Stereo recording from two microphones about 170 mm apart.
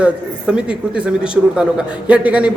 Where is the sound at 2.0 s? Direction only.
10° right (ahead or behind).